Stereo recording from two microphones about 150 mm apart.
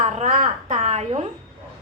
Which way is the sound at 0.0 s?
50° right (ahead or behind).